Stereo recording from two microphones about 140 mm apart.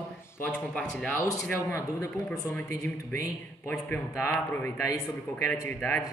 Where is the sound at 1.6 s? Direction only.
20° left (ahead or behind).